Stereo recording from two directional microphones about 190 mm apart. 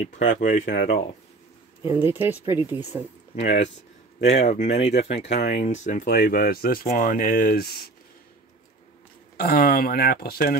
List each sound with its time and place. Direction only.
0.0 s speech: 40° left (ahead or behind)
1.9 s speech: 10° right (ahead or behind)
3.3 s speech: 35° left (ahead or behind); by 7.9 s 55° left (ahead or behind)
9.4 s speech: 50° left (ahead or behind)